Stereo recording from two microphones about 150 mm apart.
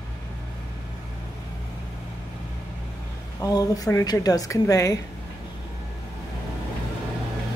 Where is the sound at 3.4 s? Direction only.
25° left (ahead or behind).